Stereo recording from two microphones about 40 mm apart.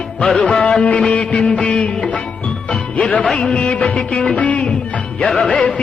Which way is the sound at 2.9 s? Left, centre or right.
Left.